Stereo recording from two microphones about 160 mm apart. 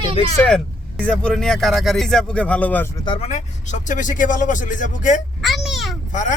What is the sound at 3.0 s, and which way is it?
Speech, 40° left (ahead or behind).